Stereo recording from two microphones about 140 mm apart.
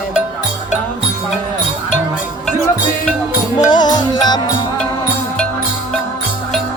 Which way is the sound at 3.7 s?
30° left (ahead or behind).